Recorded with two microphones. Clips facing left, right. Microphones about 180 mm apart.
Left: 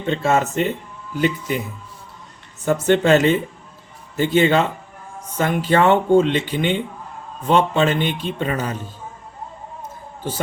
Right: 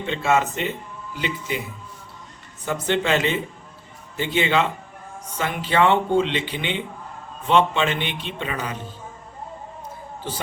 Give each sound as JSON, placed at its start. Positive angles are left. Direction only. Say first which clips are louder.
{"t": 0.0, "sound": "a man's voice", "louder": "left 2 dB", "side_deg": 40}
{"t": 2.6, "sound": "a man's voice", "louder": "left 7 dB", "side_deg": 45}